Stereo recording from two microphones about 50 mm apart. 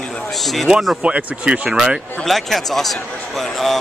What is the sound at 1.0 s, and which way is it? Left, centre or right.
Speech, right.